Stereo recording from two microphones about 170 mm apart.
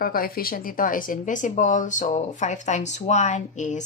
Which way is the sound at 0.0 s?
60° left (ahead or behind).